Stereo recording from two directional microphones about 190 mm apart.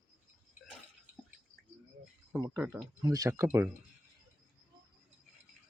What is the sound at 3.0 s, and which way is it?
Speech, 20° right (ahead or behind).